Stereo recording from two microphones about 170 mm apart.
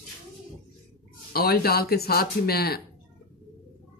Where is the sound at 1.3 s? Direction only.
60° left (ahead or behind).